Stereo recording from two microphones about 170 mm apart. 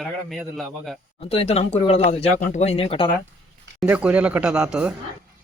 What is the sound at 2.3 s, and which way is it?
Speech, 45° left (ahead or behind).